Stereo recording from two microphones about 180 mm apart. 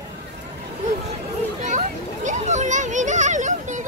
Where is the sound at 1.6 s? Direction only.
40° right (ahead or behind).